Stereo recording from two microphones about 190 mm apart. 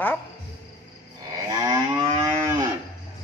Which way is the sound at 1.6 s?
20° right (ahead or behind).